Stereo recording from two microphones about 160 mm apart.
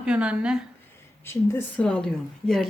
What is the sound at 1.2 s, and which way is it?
A woman's voice, 10° left (ahead or behind).